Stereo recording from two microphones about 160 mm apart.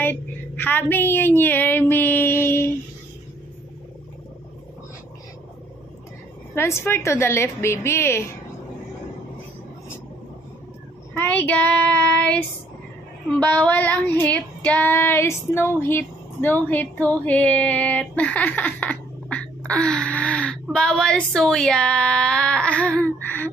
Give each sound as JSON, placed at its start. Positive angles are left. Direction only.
{"t": 0.0, "sound": "a sound", "side_deg": 10}
{"t": 6.5, "sound": "female singing", "side_deg": 15}
{"t": 11.1, "sound": "female singing", "side_deg": 10}
{"t": 20.7, "sound": "speech", "side_deg": 5}